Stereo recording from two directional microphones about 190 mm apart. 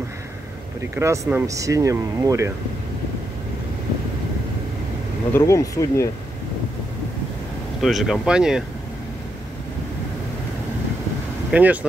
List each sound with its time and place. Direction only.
0.9 s speech: 15° right (ahead or behind)
5.3 s speech: 15° left (ahead or behind)
7.8 s speech: centre (ahead or behind)
11.5 s speech: 5° right (ahead or behind)